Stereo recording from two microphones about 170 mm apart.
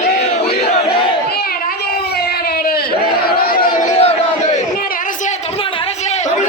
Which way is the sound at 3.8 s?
40° left (ahead or behind).